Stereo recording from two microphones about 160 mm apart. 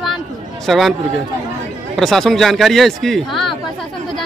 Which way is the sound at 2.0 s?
Centre (ahead or behind).